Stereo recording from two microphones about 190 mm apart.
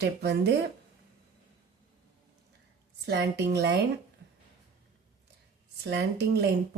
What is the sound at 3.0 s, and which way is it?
Speech, 60° right (ahead or behind).